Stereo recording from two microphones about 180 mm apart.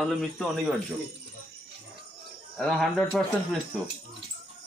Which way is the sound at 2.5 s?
Centre (ahead or behind).